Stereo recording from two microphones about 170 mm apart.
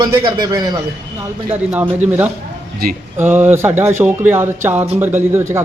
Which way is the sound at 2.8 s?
60° right (ahead or behind).